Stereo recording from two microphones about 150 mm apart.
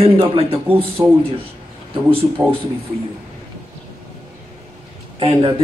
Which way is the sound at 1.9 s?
40° right (ahead or behind).